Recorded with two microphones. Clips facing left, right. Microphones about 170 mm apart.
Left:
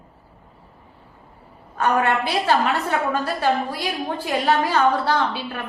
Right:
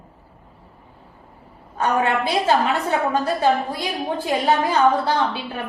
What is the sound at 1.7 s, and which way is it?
A woman's voice, 20° right (ahead or behind).